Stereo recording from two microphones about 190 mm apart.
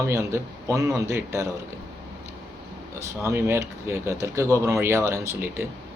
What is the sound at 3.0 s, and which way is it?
A man's voice, 15° right (ahead or behind).